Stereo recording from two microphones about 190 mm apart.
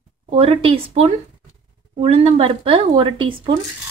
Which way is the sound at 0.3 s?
30° right (ahead or behind).